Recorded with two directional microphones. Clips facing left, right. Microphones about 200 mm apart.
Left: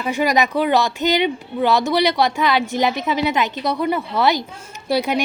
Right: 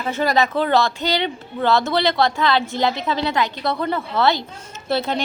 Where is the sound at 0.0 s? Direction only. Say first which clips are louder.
Left 1 dB; 15° left (ahead or behind).